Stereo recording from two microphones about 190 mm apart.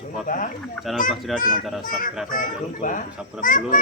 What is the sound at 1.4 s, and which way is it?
A child's voice, 45° left (ahead or behind).